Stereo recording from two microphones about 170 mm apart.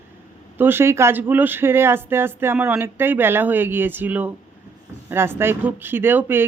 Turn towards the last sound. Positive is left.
turn(degrees=-10)  # may be behind; listen again after turning